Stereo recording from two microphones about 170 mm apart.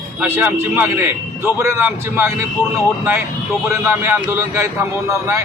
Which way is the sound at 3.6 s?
15° right (ahead or behind).